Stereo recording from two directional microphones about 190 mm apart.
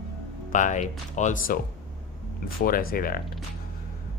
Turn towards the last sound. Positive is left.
turn(degrees=50)  # may be behind; listen again after turning